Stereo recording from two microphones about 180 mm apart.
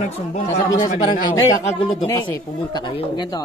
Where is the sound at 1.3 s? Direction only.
20° left (ahead or behind).